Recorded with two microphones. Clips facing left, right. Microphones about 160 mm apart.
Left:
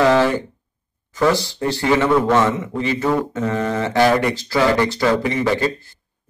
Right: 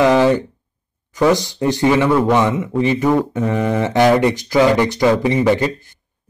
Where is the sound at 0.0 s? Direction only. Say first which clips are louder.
Right 2 dB; 15° right (ahead or behind).